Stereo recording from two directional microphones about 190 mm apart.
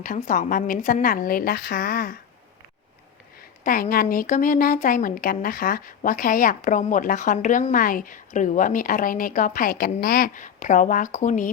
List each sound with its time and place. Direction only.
0.0 s speech: 45° left (ahead or behind)
3.6 s speech: 45° left (ahead or behind)